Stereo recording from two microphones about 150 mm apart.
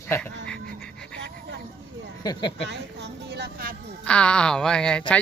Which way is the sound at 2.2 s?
30° left (ahead or behind).